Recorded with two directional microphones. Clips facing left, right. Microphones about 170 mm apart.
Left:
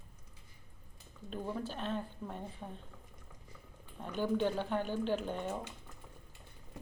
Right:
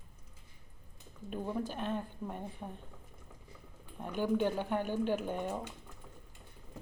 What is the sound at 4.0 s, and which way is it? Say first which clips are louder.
A woman's voice: right 1 dB; 15° right (ahead or behind).